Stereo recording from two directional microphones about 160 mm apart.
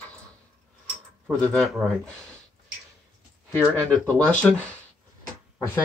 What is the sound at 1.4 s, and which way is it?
Speech, 5° left (ahead or behind).